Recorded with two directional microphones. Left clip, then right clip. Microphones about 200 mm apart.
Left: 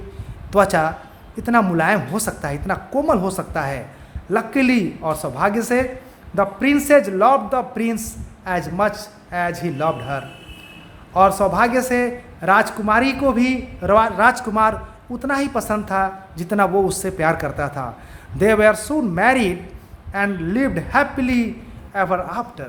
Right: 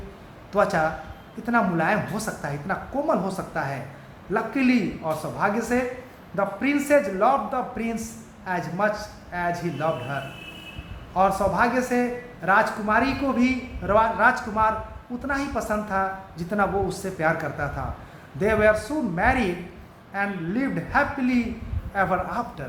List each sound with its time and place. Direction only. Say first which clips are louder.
0.5 s a man's voice: left 6 dB; 55° left (ahead or behind)